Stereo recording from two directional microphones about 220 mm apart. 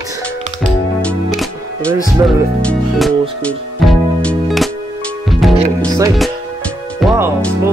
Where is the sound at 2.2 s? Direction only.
10° right (ahead or behind).